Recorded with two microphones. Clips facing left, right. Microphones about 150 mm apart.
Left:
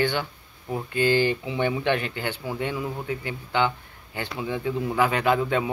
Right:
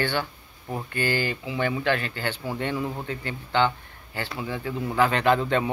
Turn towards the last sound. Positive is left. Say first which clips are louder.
# right 1 dB
turn(degrees=10)  # may be behind; listen again after turning